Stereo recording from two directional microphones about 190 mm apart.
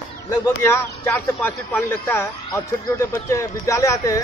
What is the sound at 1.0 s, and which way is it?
A man's voice, 10° left (ahead or behind).